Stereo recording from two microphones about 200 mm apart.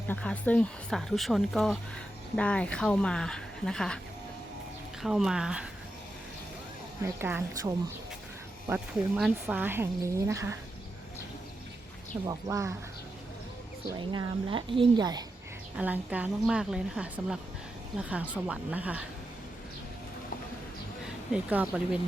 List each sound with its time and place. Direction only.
0.1 s speech: 5° left (ahead or behind)
5.0 s speech: centre (ahead or behind)
7.0 s speech: 10° right (ahead or behind)
12.3 s speech: 15° right (ahead or behind)
14.1 s a woman's voice: 25° right (ahead or behind)
15.8 s speech: 5° right (ahead or behind)
21.3 s speech: 5° right (ahead or behind)